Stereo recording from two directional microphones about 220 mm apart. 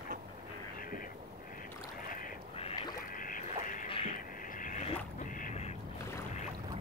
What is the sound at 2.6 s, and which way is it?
Duck, 25° left (ahead or behind).